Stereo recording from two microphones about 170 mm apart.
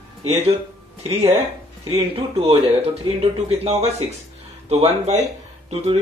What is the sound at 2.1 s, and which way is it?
Speech, 35° right (ahead or behind).